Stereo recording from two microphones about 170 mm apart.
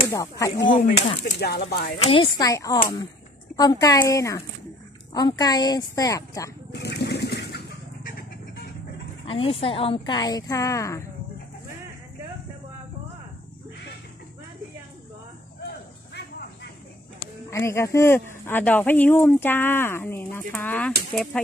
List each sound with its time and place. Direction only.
0.1 s speech: 20° left (ahead or behind)
0.7 s speech: 40° left (ahead or behind)
1.4 s speech: 70° left (ahead or behind)
2.0 s speech: 30° left (ahead or behind)
6.7 s a sound: 80° left
9.2 s speech: 35° left (ahead or behind); by 11.1 s 15° left (ahead or behind)
17.5 s speech: 15° left (ahead or behind)